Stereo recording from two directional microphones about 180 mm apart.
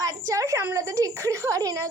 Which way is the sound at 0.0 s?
20° right (ahead or behind).